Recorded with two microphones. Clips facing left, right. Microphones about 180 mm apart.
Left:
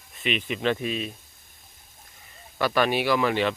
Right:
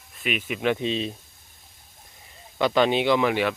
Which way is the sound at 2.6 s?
20° right (ahead or behind).